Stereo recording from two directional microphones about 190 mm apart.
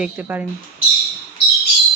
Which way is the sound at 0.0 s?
5° right (ahead or behind).